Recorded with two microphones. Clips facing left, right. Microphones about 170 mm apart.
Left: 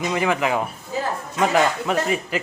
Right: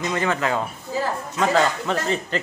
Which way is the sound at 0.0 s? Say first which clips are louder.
Left 2 dB; 15° left (ahead or behind).